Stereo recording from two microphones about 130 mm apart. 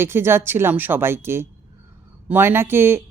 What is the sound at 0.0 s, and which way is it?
A woman's voice, 20° right (ahead or behind).